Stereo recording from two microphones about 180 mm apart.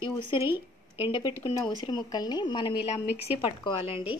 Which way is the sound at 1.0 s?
25° left (ahead or behind).